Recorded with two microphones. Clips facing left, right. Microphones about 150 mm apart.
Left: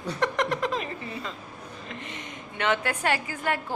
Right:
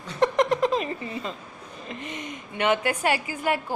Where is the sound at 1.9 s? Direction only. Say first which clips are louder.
Right 6 dB; 15° right (ahead or behind).